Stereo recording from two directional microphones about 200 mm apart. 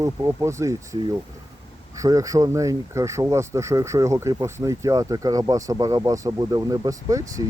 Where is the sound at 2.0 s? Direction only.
15° right (ahead or behind).